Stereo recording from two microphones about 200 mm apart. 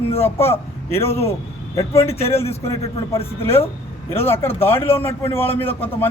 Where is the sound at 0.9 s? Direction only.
10° left (ahead or behind).